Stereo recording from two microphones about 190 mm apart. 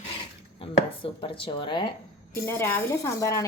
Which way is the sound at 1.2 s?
25° left (ahead or behind).